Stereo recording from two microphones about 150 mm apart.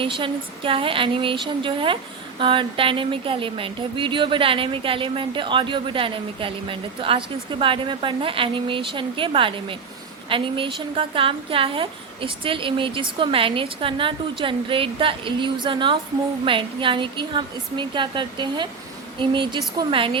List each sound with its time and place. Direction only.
0.0 s speech: 35° right (ahead or behind)